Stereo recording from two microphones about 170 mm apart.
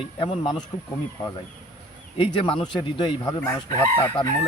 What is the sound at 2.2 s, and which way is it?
Speech, 30° left (ahead or behind).